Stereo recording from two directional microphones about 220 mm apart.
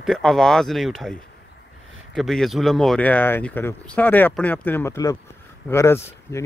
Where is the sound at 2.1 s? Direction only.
Centre (ahead or behind).